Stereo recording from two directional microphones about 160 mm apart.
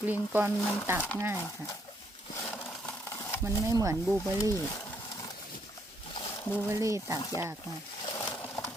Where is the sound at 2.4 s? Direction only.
10° left (ahead or behind).